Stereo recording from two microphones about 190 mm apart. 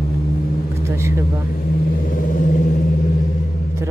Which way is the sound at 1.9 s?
45° left (ahead or behind).